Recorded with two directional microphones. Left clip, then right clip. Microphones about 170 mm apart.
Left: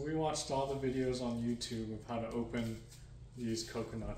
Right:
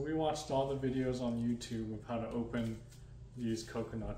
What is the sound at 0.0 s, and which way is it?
A man's voice, centre (ahead or behind).